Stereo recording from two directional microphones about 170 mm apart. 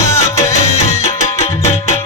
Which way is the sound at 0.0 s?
15° left (ahead or behind).